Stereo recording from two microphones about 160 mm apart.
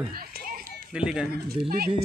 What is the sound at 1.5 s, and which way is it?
Speech, 70° right (ahead or behind).